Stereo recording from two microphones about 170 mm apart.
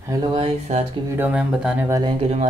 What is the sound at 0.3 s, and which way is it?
Speech, 35° right (ahead or behind).